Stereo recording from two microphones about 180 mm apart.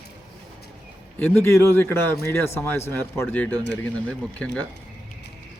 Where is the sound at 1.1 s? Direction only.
10° left (ahead or behind).